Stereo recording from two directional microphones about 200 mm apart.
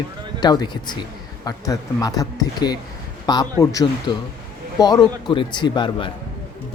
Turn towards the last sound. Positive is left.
turn(degrees=20)  # may be behind; listen again after turning